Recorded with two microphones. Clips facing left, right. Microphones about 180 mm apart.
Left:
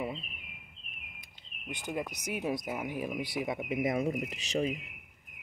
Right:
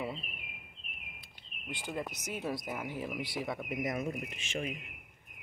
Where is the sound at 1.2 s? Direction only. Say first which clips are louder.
Left 3 dB; 20° left (ahead or behind).